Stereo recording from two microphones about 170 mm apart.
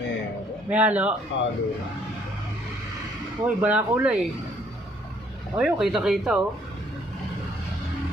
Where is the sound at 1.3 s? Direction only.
90° left.